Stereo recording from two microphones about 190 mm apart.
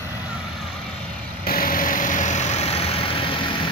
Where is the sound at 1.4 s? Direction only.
50° left (ahead or behind).